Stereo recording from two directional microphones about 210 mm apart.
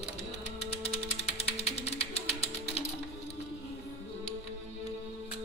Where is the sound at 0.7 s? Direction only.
30° left (ahead or behind).